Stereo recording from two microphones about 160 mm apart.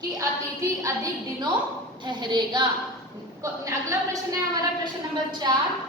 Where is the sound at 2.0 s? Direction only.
25° right (ahead or behind).